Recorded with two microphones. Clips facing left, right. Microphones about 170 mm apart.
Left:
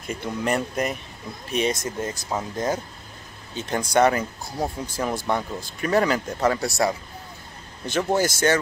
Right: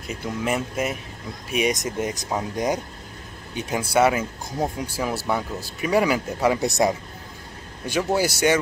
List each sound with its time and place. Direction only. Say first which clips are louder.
0.1 s speech: left 1 dB; 5° right (ahead or behind)
1.5 s speech: right 1 dB; 15° right (ahead or behind)